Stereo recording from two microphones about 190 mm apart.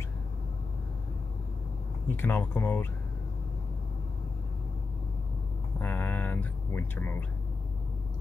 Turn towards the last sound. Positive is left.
turn(degrees=10)  # may be behind; listen again after turning